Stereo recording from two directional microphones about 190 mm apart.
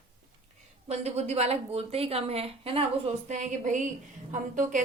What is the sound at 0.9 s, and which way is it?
A woman's voice, 35° right (ahead or behind).